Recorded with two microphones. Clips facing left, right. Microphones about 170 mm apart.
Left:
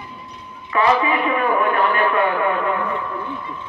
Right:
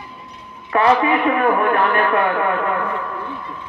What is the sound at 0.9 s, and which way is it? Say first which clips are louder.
A man's voice: right 2 dB; 50° right (ahead or behind).